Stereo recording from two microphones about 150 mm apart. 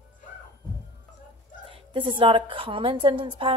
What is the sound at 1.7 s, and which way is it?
A woman's voice, 35° right (ahead or behind).